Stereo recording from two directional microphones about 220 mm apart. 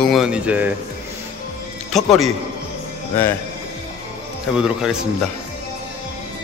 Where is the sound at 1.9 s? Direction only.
Centre (ahead or behind).